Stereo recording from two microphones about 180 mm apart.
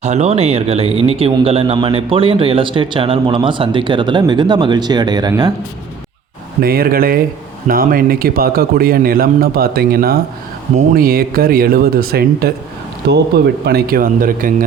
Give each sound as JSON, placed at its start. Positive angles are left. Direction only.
{"t": 0.0, "sound": "a man's voice", "side_deg": -35}
{"t": 6.6, "sound": "a man's voice", "side_deg": -55}